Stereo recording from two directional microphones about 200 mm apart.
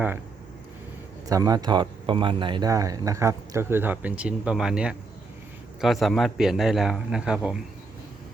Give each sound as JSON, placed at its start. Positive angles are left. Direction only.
{"t": 1.3, "sound": "a man's voice", "side_deg": -20}